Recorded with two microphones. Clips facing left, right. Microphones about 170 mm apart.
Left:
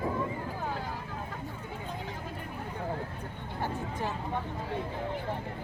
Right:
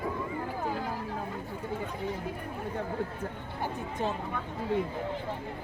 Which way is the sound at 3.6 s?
20° right (ahead or behind).